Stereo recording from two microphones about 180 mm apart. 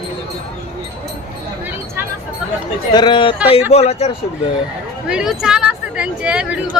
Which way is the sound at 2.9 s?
25° left (ahead or behind).